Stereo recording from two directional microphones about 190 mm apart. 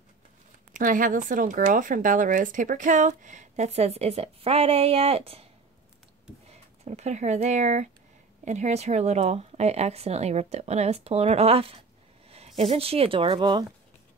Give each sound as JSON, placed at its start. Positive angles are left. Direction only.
{"t": 0.7, "sound": "speech", "side_deg": -45}
{"t": 6.5, "sound": "speech", "side_deg": -35}